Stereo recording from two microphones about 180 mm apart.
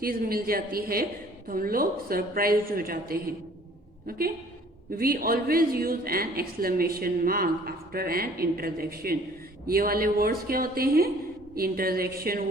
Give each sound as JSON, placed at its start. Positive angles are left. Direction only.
{"t": 0.0, "sound": "a woman's voice", "side_deg": -55}
{"t": 4.9, "sound": "a woman's voice", "side_deg": -55}